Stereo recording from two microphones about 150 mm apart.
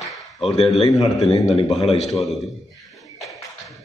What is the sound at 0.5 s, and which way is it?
A man's voice, 45° left (ahead or behind).